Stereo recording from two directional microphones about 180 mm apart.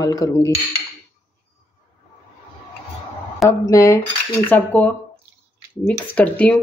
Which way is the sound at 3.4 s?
15° left (ahead or behind).